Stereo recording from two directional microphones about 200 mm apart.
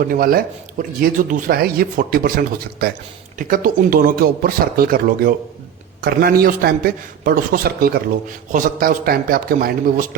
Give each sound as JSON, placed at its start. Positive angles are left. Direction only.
{"t": 0.0, "sound": "speech", "side_deg": -45}